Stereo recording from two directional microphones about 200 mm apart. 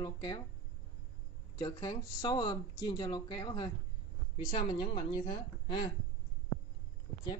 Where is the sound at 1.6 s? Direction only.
20° left (ahead or behind).